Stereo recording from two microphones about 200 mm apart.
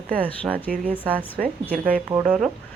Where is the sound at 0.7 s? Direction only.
45° right (ahead or behind).